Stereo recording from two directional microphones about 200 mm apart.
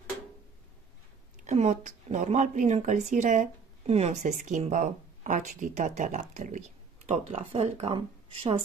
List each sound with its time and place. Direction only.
1.4 s speech: 35° right (ahead or behind)